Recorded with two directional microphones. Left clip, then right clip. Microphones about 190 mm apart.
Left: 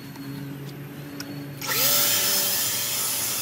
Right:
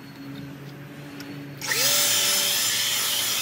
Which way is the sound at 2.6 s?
Centre (ahead or behind).